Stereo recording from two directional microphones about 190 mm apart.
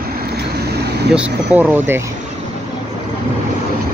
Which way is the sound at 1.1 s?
5° right (ahead or behind).